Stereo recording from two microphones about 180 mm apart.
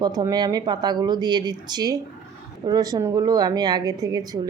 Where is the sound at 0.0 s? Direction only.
20° right (ahead or behind).